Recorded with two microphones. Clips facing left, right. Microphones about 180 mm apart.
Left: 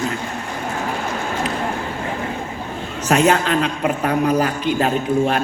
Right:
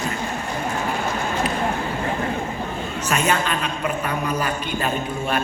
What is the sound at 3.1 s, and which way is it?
A man's voice, 80° left.